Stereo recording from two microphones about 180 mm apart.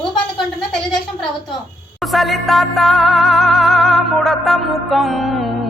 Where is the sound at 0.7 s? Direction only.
5° left (ahead or behind).